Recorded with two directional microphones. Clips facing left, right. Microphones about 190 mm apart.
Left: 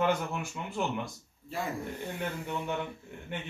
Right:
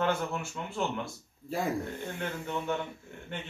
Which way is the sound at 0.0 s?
15° left (ahead or behind).